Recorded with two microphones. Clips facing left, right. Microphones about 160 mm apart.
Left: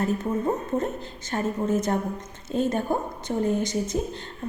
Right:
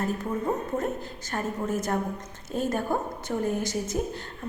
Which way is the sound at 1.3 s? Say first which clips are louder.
Left 4 dB; 20° left (ahead or behind).